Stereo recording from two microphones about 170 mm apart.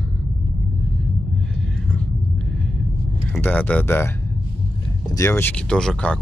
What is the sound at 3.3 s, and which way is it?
Speech, 10° left (ahead or behind).